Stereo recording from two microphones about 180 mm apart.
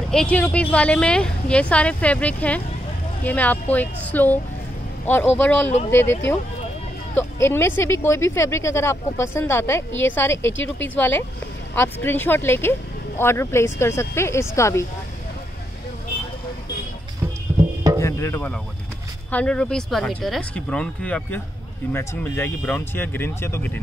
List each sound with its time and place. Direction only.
0.1 s speech: 5° left (ahead or behind)
17.9 s music: 15° left (ahead or behind)
19.3 s speech: 5° left (ahead or behind)